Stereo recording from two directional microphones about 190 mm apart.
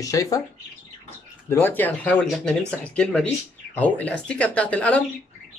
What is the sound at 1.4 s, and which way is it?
Speech, 10° left (ahead or behind).